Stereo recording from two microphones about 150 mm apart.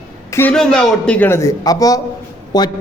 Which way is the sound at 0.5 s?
5° left (ahead or behind).